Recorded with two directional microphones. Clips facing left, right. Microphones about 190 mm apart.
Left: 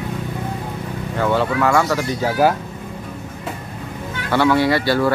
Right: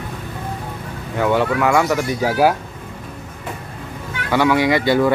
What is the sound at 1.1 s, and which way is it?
Speech, 10° right (ahead or behind).